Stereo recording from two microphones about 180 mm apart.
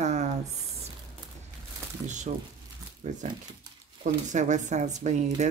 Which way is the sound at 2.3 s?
45° right (ahead or behind).